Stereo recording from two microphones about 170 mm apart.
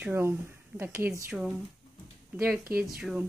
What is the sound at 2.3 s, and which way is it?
Speech, 5° right (ahead or behind).